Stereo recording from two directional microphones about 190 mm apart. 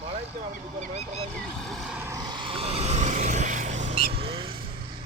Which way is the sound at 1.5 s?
Centre (ahead or behind).